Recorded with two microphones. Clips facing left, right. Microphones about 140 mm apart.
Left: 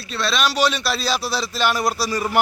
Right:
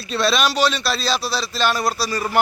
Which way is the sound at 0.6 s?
15° left (ahead or behind).